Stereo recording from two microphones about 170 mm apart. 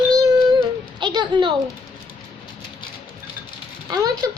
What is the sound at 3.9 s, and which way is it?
Speech, 20° right (ahead or behind).